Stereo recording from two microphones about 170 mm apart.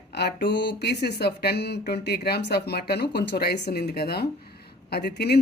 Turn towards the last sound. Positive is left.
turn(degrees=75)  # may be behind; listen again after turning